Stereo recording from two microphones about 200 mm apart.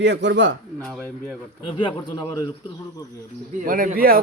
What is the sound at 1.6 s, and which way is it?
Speech, 25° left (ahead or behind).